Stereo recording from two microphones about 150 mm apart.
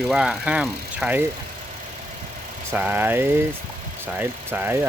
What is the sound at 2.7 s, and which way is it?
Speech, 10° right (ahead or behind).